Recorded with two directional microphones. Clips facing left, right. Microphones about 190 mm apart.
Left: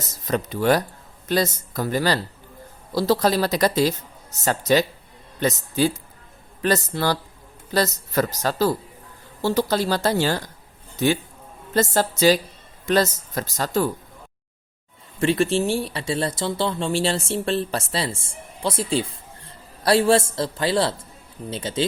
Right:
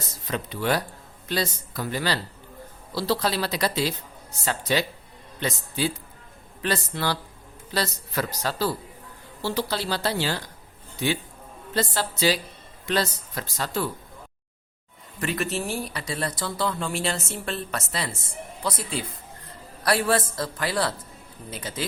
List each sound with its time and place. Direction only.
0.3 s speech: 45° left (ahead or behind)
11.7 s speech: 45° left (ahead or behind)
15.2 s speech: 30° left (ahead or behind)